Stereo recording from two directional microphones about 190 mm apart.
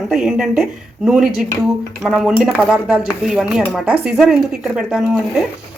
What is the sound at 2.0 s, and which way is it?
Speech, centre (ahead or behind).